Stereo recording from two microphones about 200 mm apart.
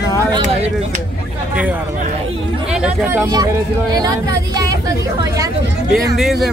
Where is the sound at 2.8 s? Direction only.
10° right (ahead or behind).